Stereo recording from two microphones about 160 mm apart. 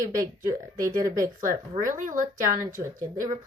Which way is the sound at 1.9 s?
55° right (ahead or behind).